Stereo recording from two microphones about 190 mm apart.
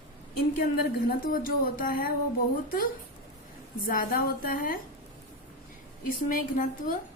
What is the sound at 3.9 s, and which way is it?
Speech, 45° left (ahead or behind).